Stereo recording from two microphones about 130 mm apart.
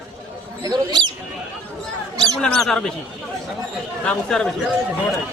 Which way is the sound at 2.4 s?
5° left (ahead or behind).